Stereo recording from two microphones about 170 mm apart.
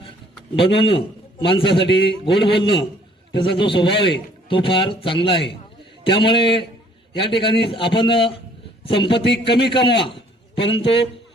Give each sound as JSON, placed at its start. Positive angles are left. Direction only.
{"t": 0.5, "sound": "a man's voice", "side_deg": 30}